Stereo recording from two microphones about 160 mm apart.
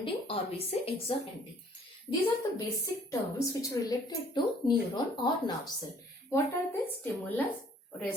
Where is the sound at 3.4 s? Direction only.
20° left (ahead or behind).